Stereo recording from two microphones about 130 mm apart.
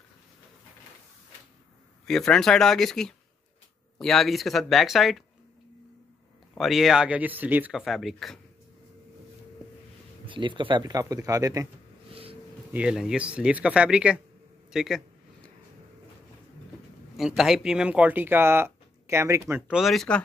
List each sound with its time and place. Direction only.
2.0 s speech: 5° left (ahead or behind)
6.5 s speech: centre (ahead or behind)
7.8 s speech: centre (ahead or behind)
10.2 s speech: 40° right (ahead or behind)
12.1 s a sound: 45° right (ahead or behind)
12.7 s a man's voice: 5° right (ahead or behind)
17.4 s speech: 5° right (ahead or behind); by 19.6 s 20° right (ahead or behind)
19.7 s speech: centre (ahead or behind)